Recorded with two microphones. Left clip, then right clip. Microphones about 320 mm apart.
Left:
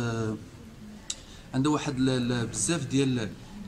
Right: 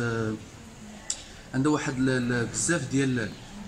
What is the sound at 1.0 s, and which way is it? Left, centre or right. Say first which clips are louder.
A man's voice: right 2 dB; centre.